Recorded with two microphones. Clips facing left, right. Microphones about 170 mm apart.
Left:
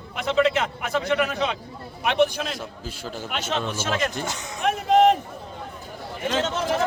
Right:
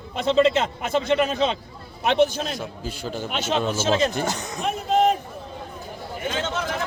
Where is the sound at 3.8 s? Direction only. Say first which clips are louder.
Right 6 dB; 25° right (ahead or behind).